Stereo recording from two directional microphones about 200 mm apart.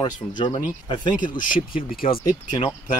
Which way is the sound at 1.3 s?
45° left (ahead or behind).